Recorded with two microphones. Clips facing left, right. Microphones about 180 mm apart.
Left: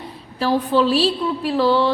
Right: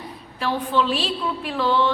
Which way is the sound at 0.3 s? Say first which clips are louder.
Left 5 dB; 35° left (ahead or behind).